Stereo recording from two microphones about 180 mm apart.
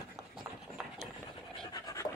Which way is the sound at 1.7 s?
20° left (ahead or behind).